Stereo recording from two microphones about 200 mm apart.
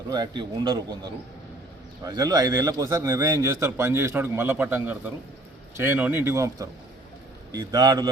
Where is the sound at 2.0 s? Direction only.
20° right (ahead or behind).